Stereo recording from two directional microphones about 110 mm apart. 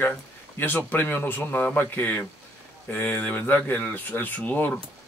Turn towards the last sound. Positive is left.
turn(degrees=15)  # may be behind; listen again after turning